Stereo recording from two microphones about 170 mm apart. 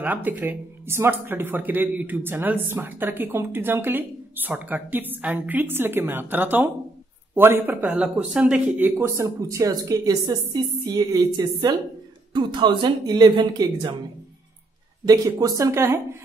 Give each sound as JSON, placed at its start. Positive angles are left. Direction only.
{"t": 0.0, "sound": "speech", "side_deg": -10}
{"t": 15.0, "sound": "speech", "side_deg": -20}